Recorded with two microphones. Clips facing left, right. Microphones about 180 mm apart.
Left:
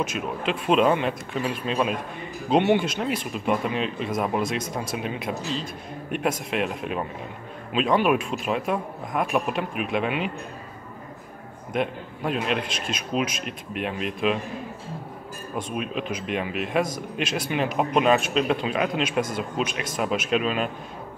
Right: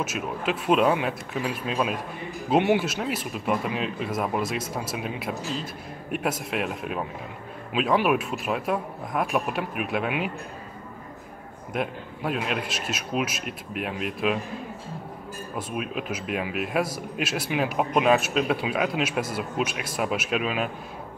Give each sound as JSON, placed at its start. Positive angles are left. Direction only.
{"t": 0.0, "sound": "speech", "side_deg": -5}
{"t": 11.7, "sound": "speech", "side_deg": -5}
{"t": 15.5, "sound": "speech", "side_deg": -5}